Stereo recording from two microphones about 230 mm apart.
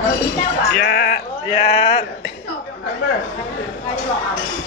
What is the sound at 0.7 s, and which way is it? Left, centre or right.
Sheep, left.